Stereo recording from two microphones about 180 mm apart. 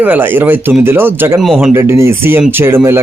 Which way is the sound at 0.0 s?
10° right (ahead or behind).